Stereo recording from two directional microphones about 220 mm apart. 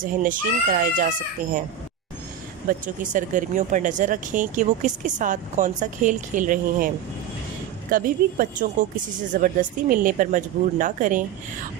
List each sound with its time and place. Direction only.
0.0 s speech: 40° right (ahead or behind)
2.6 s speech: 35° right (ahead or behind)